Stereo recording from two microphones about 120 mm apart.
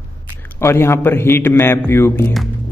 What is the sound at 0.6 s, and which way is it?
A man's voice, 20° left (ahead or behind).